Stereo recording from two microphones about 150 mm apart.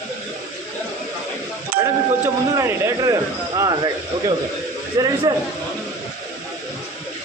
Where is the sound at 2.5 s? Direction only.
20° right (ahead or behind).